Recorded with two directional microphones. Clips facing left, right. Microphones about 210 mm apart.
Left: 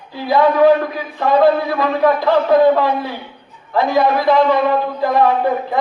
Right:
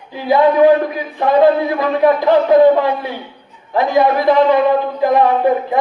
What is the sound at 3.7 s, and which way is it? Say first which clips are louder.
A man's voice: right 1 dB; 15° right (ahead or behind).